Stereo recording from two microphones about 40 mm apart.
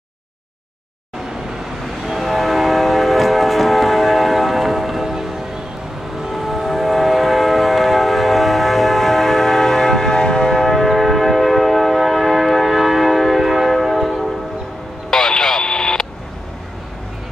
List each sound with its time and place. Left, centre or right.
2.0 s train: centre
6.3 s train: centre
10.6 s train: centre
15.0 s radio: centre